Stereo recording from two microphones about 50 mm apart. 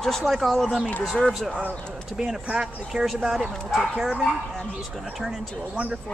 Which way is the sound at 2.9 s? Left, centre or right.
Centre.